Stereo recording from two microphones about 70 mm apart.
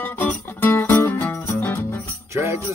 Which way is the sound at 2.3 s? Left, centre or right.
Right.